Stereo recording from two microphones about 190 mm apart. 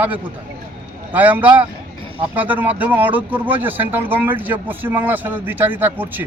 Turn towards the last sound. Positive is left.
turn(degrees=-10)  # may be behind; listen again after turning